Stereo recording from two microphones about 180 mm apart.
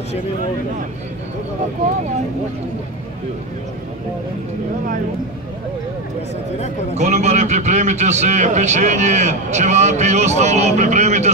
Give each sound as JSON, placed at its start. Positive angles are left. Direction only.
{"t": 7.0, "sound": "a man's voice", "side_deg": -40}